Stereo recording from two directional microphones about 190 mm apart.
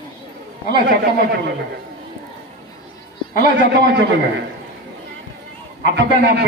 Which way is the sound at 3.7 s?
65° right (ahead or behind).